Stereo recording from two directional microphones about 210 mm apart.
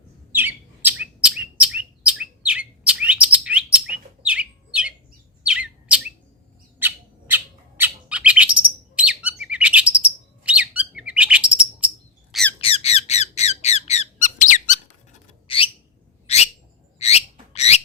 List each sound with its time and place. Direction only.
0.3 s chirp: 10° right (ahead or behind)
6.7 s bird: 10° right (ahead or behind)
12.3 s squeak: 5° left (ahead or behind)
12.5 s squeak: 30° left (ahead or behind)
15.4 s a sound: 25° left (ahead or behind)
16.2 s bird: 30° left (ahead or behind)
17.0 s a sound: 30° left (ahead or behind)
17.5 s bird: 30° left (ahead or behind)